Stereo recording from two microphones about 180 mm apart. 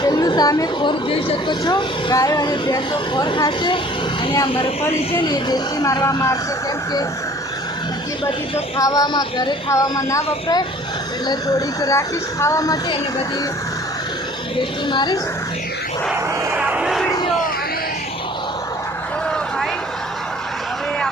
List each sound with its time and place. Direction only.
0.0 s a woman's voice: 20° left (ahead or behind)
8.8 s a woman's voice: 20° left (ahead or behind)
14.5 s a woman's voice: 25° left (ahead or behind)
16.4 s vehicle: 10° right (ahead or behind)